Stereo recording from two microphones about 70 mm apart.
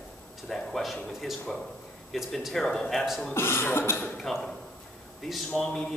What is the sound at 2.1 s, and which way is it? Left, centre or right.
Speech, centre.